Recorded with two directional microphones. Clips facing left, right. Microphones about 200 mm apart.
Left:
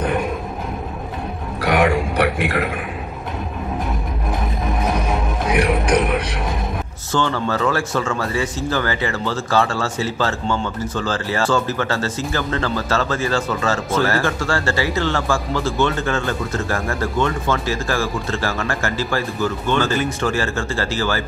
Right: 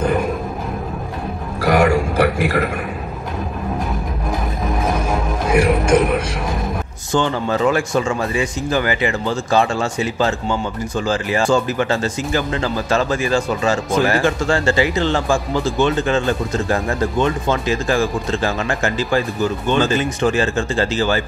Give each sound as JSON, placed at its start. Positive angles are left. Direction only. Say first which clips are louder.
{"t": 1.6, "sound": "a sound", "louder": "right 2 dB", "side_deg": 0}
{"t": 4.6, "sound": "music", "louder": "right 2 dB", "side_deg": 0}
{"t": 7.1, "sound": "speech", "louder": "right 2 dB", "side_deg": -15}